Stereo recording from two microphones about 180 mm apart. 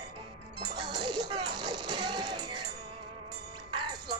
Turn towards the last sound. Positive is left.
turn(degrees=-25)  # may be behind; listen again after turning